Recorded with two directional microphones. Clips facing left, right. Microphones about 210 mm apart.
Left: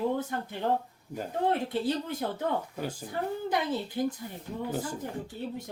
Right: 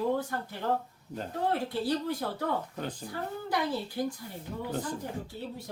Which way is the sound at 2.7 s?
10° left (ahead or behind).